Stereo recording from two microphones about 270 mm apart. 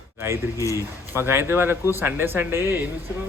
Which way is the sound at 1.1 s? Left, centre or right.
Centre.